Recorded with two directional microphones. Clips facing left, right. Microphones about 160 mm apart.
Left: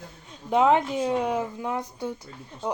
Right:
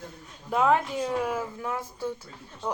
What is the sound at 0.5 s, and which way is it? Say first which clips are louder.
Speech: left 3 dB; 25° left (ahead or behind).